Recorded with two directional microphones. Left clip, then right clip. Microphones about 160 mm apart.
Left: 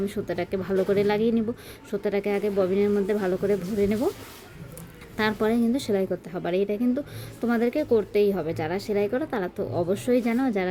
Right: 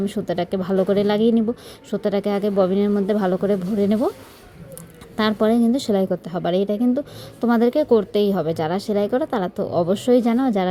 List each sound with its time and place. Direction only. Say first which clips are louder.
0.0 s speech: right 5 dB; 30° right (ahead or behind)
5.1 s speech: right 5 dB; 25° right (ahead or behind)